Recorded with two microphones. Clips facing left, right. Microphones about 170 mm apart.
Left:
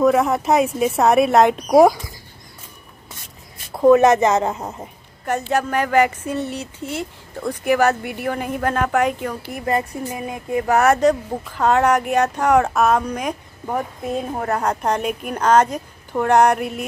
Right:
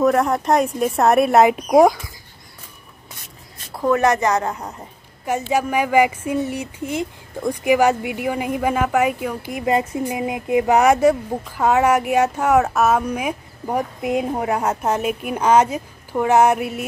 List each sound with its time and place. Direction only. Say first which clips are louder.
0.0 s speech: left 1 dB; centre (ahead or behind)
3.8 s speech: left 5 dB; 20° left (ahead or behind)
5.2 s speech: even; 10° right (ahead or behind)